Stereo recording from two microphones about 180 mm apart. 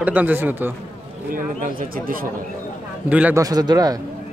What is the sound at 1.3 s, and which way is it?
Speech, 50° right (ahead or behind).